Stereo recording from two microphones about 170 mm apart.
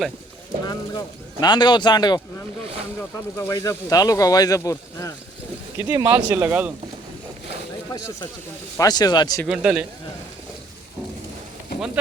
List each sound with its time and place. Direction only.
0.6 s speech: 25° left (ahead or behind)
3.3 s speech: 20° left (ahead or behind)
5.9 s speech: 15° right (ahead or behind)
8.8 s speech: 25° left (ahead or behind)
9.5 s a man's voice: 5° right (ahead or behind)